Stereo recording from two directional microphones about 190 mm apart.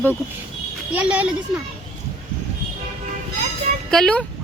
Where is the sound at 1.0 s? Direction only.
5° right (ahead or behind).